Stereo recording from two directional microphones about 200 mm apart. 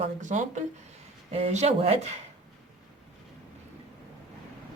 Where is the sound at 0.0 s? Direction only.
40° right (ahead or behind).